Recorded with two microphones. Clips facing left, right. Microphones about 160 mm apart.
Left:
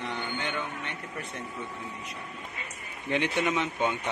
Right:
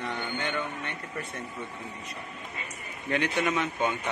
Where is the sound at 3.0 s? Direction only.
20° left (ahead or behind).